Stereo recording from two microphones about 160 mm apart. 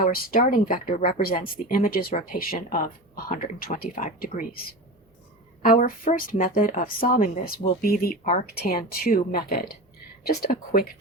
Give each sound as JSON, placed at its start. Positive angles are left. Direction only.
{"t": 0.0, "sound": "speech", "side_deg": 60}
{"t": 5.6, "sound": "speech", "side_deg": 60}